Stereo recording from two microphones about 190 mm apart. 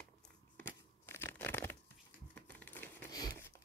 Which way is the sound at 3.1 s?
20° left (ahead or behind).